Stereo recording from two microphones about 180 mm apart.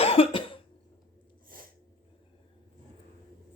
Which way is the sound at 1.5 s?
50° right (ahead or behind).